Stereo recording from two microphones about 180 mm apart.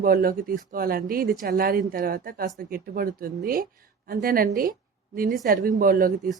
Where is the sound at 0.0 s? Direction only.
55° right (ahead or behind).